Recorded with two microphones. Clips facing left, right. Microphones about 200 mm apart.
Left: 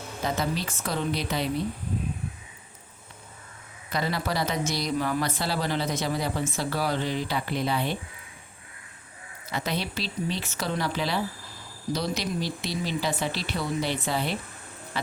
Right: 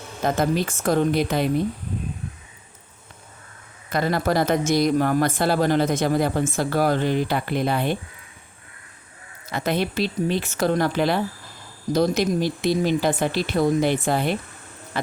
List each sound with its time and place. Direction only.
0.2 s speech: 50° right (ahead or behind)
3.9 s speech: 50° right (ahead or behind)
9.5 s speech: 50° right (ahead or behind)